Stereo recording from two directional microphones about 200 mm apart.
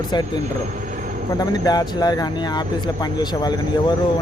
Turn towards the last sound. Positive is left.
turn(degrees=20)  # may be behind; listen again after turning